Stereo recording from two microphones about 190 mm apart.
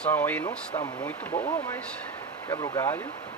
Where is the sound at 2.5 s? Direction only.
20° left (ahead or behind).